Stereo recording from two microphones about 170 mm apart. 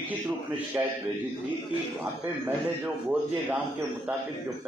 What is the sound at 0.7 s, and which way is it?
Speech, 15° right (ahead or behind).